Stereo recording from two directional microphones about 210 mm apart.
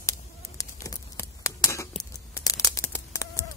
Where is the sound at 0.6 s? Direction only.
15° left (ahead or behind).